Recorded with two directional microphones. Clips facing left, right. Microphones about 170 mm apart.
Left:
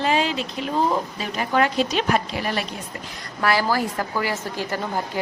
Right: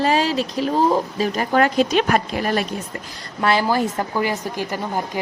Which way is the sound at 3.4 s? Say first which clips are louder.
Right 3 dB; 20° right (ahead or behind).